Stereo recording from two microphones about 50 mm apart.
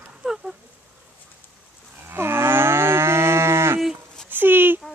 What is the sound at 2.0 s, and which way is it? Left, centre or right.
Livestock, right.